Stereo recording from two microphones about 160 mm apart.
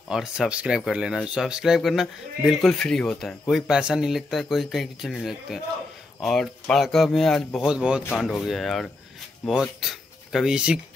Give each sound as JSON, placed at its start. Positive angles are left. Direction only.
{"t": 0.1, "sound": "speech", "side_deg": -5}